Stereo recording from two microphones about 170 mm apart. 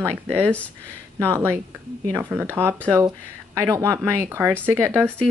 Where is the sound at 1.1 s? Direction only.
15° right (ahead or behind).